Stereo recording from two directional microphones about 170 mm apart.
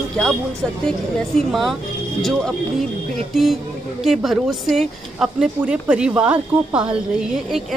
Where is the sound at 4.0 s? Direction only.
Centre (ahead or behind).